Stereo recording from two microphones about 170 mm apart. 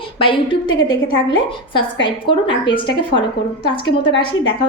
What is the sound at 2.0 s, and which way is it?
A woman's voice, 30° left (ahead or behind).